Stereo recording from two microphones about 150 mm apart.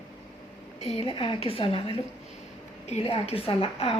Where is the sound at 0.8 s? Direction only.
40° left (ahead or behind).